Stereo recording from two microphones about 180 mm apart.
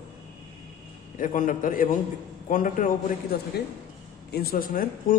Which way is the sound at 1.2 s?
45° left (ahead or behind).